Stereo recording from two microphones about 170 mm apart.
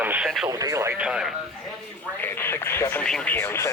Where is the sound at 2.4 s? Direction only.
15° left (ahead or behind).